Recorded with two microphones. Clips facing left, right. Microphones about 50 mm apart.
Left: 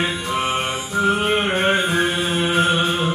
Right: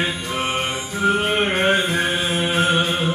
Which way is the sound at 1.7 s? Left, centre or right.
Left.